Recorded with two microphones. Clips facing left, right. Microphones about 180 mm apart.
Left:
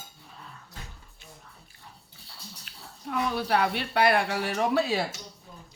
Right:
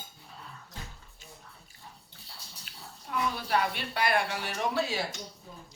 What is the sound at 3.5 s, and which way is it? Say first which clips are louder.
Speech: left 4 dB; 55° left (ahead or behind).